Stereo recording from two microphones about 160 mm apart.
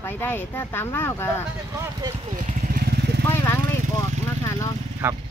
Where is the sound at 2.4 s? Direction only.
70° right (ahead or behind).